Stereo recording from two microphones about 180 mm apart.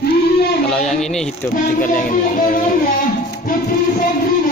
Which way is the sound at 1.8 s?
50° left (ahead or behind).